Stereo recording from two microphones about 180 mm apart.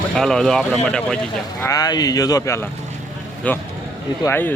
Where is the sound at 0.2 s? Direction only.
5° left (ahead or behind).